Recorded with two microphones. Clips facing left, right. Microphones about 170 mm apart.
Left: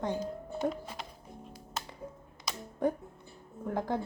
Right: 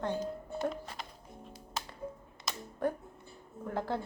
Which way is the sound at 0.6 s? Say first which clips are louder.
Left 3 dB; centre (ahead or behind).